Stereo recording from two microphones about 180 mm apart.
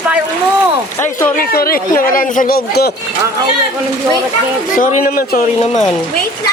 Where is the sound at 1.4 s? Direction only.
55° left (ahead or behind).